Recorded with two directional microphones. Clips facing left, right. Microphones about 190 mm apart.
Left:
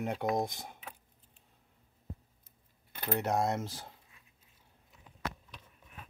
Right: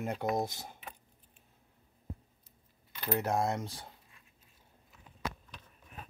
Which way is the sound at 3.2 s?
Centre (ahead or behind).